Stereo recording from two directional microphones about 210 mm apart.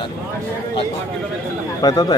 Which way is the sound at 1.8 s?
20° left (ahead or behind).